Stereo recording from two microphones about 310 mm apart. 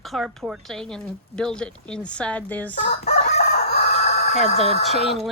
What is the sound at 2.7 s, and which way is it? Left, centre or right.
Crowing, left.